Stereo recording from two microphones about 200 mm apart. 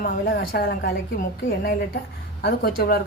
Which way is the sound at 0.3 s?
55° left (ahead or behind).